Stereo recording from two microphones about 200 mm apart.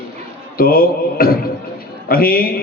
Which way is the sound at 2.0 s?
50° left (ahead or behind).